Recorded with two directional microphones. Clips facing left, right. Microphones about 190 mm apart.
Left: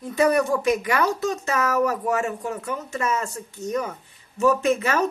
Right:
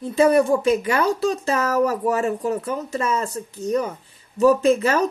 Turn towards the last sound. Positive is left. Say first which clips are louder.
# right 4 dB
turn(degrees=-35)  # may be behind; listen again after turning